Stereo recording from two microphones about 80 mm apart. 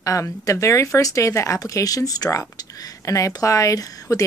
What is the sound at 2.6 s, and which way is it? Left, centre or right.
A woman's voice, left.